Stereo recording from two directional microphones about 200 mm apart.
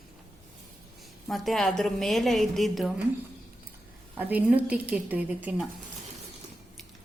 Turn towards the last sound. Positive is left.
turn(degrees=-5)  # may be behind; listen again after turning